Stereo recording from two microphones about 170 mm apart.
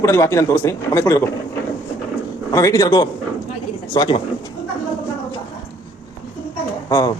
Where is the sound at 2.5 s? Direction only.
20° left (ahead or behind).